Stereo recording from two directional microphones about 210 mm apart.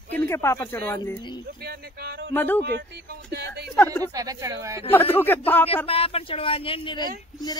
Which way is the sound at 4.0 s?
15° right (ahead or behind).